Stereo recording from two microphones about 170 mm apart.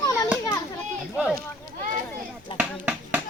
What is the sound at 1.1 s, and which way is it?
Speech, 5° right (ahead or behind).